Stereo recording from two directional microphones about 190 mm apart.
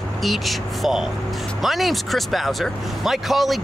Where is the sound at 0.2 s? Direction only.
Centre (ahead or behind).